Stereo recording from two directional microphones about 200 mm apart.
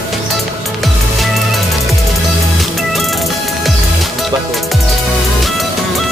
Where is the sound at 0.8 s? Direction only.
Centre (ahead or behind).